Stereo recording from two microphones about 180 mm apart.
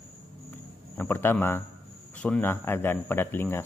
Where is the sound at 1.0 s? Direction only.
10° left (ahead or behind).